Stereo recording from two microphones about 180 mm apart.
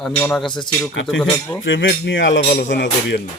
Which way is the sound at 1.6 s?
90° left.